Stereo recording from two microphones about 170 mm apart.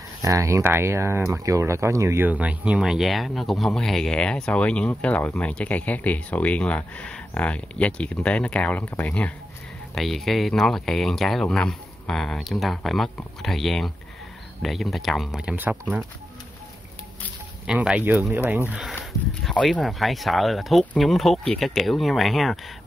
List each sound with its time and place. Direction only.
0.2 s speech: 15° right (ahead or behind)
17.6 s speech: 5° right (ahead or behind)
19.4 s speech: 5° left (ahead or behind)